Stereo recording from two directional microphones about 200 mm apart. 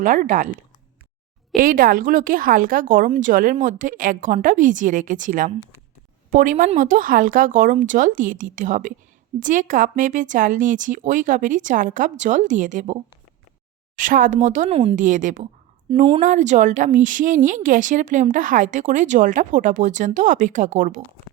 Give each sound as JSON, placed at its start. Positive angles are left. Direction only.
{"t": 0.0, "sound": "a woman's voice", "side_deg": -40}
{"t": 1.5, "sound": "a woman's voice", "side_deg": -45}